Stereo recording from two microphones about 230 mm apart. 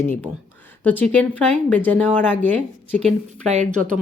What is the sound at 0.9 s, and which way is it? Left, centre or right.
Speech, centre.